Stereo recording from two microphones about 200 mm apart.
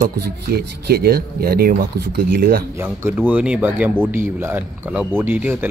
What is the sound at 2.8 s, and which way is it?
Speech, 10° right (ahead or behind).